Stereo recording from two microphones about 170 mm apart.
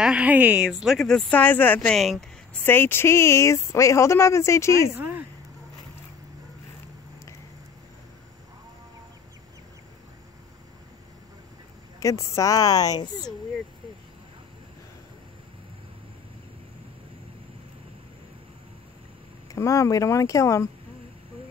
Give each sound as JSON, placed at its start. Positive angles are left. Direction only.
{"t": 0.0, "sound": "a woman's voice", "side_deg": -5}
{"t": 2.6, "sound": "speech", "side_deg": 10}
{"t": 4.9, "sound": "a sound", "side_deg": -10}
{"t": 12.0, "sound": "a woman's voice", "side_deg": 20}
{"t": 19.5, "sound": "a woman's voice", "side_deg": 20}